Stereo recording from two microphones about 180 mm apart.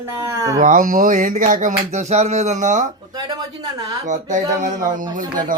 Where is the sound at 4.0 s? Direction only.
45° right (ahead or behind).